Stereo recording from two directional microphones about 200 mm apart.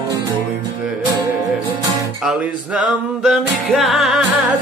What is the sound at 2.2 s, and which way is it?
Music, 5° right (ahead or behind).